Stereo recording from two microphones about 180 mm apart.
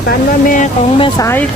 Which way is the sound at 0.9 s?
30° left (ahead or behind).